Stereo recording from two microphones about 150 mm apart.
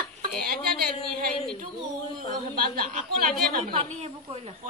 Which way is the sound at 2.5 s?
70° right (ahead or behind).